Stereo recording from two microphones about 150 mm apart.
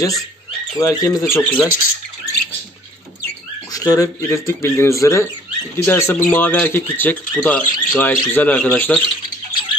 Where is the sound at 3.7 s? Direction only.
25° left (ahead or behind).